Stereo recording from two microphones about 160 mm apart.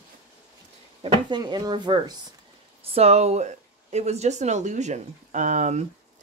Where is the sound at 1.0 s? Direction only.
30° right (ahead or behind).